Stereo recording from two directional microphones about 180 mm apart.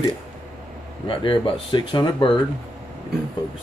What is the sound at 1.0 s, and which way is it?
Speech, 30° left (ahead or behind).